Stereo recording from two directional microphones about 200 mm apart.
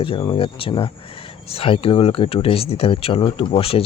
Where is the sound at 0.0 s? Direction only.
25° left (ahead or behind).